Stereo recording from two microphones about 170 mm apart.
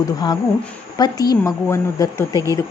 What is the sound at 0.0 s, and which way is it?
Speech, 25° left (ahead or behind).